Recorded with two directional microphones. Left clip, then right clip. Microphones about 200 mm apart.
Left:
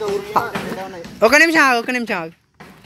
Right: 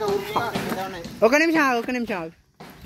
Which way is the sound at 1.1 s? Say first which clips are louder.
Left 6 dB; centre (ahead or behind).